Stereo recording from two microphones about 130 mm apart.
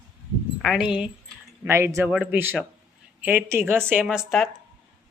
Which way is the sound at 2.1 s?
10° right (ahead or behind).